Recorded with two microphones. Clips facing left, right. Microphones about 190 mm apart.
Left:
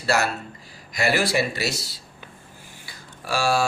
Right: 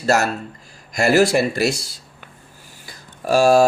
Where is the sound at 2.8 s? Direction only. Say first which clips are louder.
Right 11 dB; 45° right (ahead or behind).